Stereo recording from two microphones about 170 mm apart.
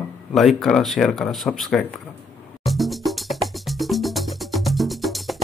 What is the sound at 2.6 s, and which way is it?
Music, centre (ahead or behind).